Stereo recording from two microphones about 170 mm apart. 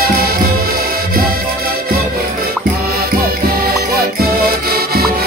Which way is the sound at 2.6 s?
65° right (ahead or behind).